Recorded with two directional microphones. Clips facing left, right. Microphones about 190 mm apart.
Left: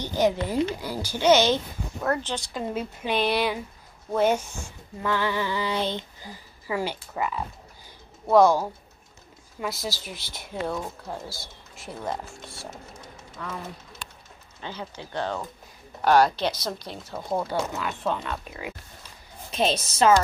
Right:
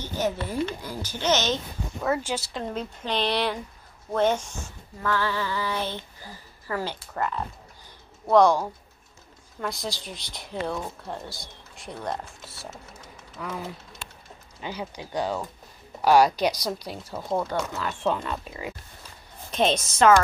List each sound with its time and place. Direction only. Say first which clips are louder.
0.0 s speech: left 4 dB; 15° left (ahead or behind)
2.0 s speech: right 1 dB; 5° right (ahead or behind)
2.6 s speech: left 2 dB; 10° left (ahead or behind)
17.4 s speech: left 2 dB; 10° left (ahead or behind)
19.7 s a woman's voice: right 1 dB; 35° left (ahead or behind)